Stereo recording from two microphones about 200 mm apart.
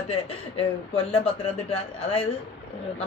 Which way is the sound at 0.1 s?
30° left (ahead or behind).